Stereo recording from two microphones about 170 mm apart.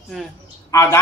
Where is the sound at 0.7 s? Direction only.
20° left (ahead or behind).